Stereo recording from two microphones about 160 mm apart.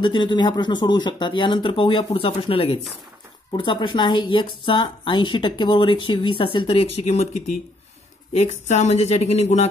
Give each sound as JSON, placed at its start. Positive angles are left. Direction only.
{"t": 0.0, "sound": "a woman's voice", "side_deg": 30}